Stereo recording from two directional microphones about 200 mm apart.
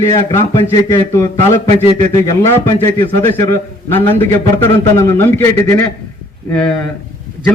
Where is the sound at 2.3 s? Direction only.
15° left (ahead or behind).